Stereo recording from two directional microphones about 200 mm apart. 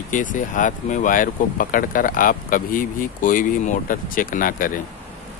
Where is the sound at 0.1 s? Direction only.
40° left (ahead or behind).